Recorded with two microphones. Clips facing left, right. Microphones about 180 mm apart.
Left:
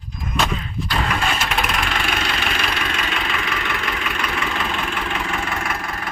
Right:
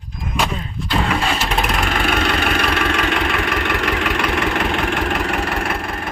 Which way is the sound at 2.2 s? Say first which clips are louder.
Right 6 dB; 55° right (ahead or behind).